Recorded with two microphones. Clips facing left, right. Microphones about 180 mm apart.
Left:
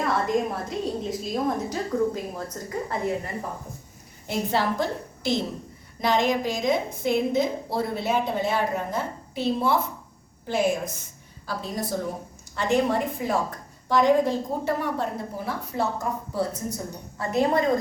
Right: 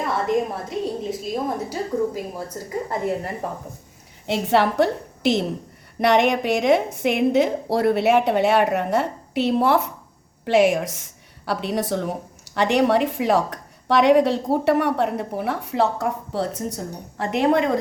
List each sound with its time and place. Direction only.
0.0 s a woman's voice: centre (ahead or behind)
3.4 s a woman's voice: 70° right (ahead or behind)